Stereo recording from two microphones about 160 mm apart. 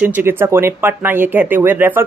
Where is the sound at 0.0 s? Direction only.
10° right (ahead or behind).